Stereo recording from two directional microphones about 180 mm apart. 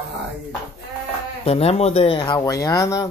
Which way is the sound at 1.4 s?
35° left (ahead or behind).